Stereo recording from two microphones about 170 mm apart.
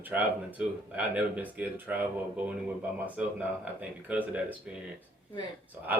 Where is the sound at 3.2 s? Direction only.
5° right (ahead or behind).